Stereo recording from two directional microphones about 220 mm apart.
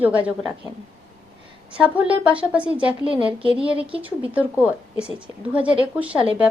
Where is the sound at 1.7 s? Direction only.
5° right (ahead or behind).